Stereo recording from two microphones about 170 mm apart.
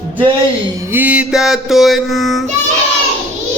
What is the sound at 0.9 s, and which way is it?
Music, 10° right (ahead or behind).